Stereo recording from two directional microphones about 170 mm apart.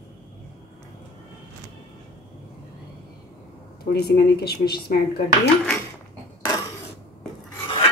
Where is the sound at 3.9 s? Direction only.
70° left (ahead or behind).